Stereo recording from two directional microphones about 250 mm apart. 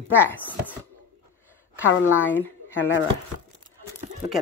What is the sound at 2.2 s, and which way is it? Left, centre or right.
Speech, centre.